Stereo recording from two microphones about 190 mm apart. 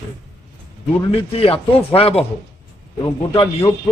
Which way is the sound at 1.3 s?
30° left (ahead or behind).